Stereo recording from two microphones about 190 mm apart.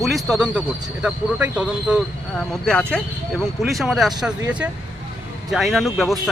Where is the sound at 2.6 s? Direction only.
5° left (ahead or behind).